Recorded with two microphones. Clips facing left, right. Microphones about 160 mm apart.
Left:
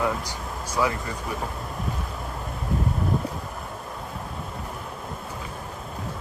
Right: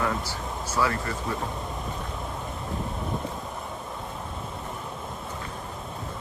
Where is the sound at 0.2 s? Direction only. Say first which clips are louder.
Even; 15° left (ahead or behind).